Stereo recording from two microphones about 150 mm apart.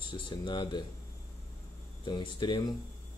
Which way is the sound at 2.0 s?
30° left (ahead or behind).